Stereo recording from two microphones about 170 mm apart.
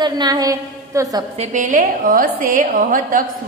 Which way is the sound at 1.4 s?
45° right (ahead or behind).